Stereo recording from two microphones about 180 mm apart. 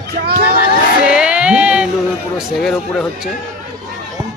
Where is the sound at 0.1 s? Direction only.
65° right (ahead or behind).